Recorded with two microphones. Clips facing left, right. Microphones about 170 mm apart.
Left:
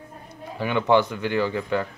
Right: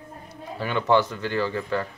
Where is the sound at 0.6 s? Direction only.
15° left (ahead or behind).